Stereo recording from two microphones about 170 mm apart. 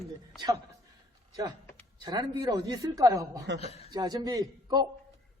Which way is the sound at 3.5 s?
90° right.